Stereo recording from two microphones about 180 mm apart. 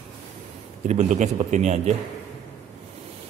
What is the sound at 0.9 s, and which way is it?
Speech, 45° right (ahead or behind).